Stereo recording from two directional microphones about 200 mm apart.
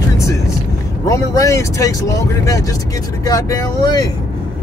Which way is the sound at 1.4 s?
15° left (ahead or behind).